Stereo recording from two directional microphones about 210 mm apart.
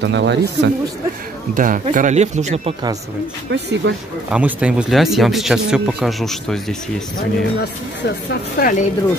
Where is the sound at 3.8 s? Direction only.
55° right (ahead or behind).